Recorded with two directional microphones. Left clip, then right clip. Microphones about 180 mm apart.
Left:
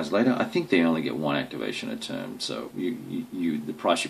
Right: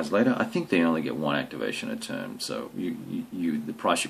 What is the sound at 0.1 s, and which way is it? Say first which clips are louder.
Speech: left 1 dB; 30° right (ahead or behind).